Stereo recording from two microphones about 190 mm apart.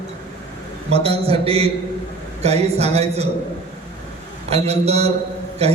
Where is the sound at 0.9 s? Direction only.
30° right (ahead or behind).